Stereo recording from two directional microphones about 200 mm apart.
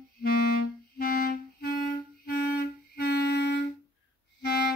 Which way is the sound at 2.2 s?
50° left (ahead or behind).